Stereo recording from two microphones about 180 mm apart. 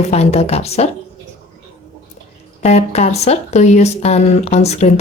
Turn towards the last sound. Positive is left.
turn(degrees=35)  # may be behind; listen again after turning